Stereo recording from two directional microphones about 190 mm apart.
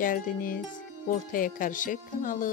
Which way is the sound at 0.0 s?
45° left (ahead or behind).